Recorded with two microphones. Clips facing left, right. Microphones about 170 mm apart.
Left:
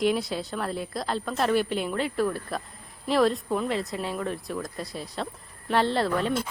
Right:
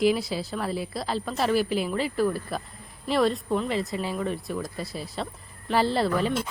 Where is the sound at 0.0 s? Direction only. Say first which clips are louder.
Right 2 dB; centre (ahead or behind).